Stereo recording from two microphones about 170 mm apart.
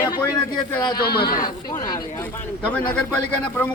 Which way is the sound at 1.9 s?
20° left (ahead or behind).